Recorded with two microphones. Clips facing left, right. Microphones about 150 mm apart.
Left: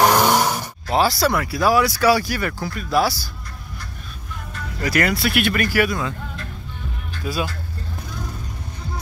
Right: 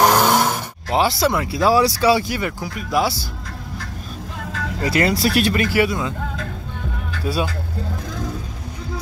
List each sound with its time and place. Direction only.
0.0 s a sound: centre (ahead or behind)
0.9 s speech: 20° right (ahead or behind)
4.5 s vehicle: 90° right
4.7 s speech: 30° right (ahead or behind)
5.5 s speech: 25° right (ahead or behind)